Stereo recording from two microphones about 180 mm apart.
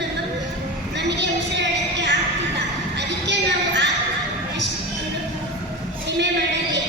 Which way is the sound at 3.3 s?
75° right (ahead or behind).